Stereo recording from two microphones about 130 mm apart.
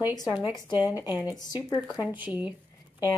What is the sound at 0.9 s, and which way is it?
Speech, 15° right (ahead or behind).